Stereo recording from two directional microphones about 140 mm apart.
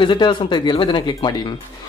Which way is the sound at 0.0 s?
35° left (ahead or behind).